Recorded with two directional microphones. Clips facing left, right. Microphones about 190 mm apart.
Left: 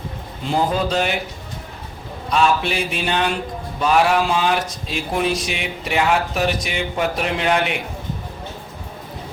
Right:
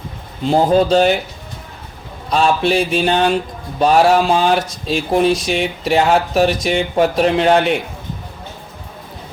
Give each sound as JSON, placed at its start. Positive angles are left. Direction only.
{"t": 0.5, "sound": "speech", "side_deg": -35}
{"t": 2.3, "sound": "speech", "side_deg": -35}